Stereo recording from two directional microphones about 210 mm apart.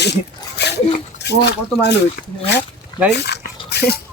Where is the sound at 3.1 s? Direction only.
55° left (ahead or behind).